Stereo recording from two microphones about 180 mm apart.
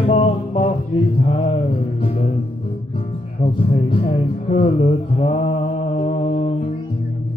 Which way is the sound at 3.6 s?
30° left (ahead or behind).